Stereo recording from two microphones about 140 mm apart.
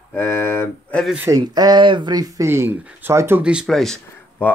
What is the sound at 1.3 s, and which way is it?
Speech, 30° right (ahead or behind).